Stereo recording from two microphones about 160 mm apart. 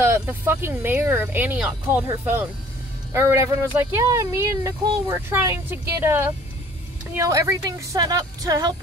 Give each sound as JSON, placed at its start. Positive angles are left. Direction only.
{"t": 0.0, "sound": "a woman's voice", "side_deg": -15}